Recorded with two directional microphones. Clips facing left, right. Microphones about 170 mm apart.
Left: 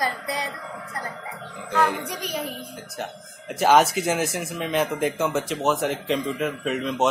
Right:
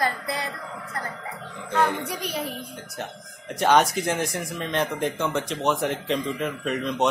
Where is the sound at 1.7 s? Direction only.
Centre (ahead or behind).